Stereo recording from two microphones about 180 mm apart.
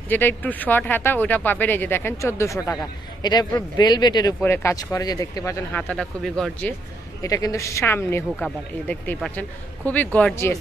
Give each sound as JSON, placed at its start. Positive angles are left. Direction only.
{"t": 0.1, "sound": "speech", "side_deg": 10}
{"t": 7.2, "sound": "speech", "side_deg": 20}